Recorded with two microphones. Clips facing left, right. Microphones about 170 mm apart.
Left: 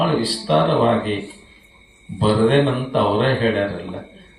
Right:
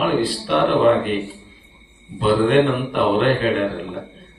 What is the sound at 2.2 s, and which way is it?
Speech, 30° left (ahead or behind).